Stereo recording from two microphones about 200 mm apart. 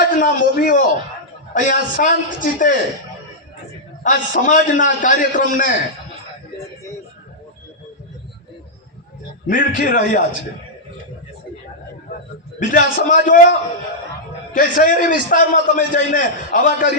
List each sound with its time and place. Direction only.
0.2 s a man's voice: 45° left (ahead or behind)
4.0 s a man's voice: 40° left (ahead or behind)
9.5 s a man's voice: 40° left (ahead or behind)
12.5 s a man's voice: 40° left (ahead or behind)